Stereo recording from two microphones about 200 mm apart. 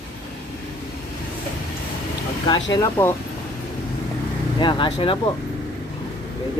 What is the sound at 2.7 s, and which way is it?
Speech, 15° left (ahead or behind).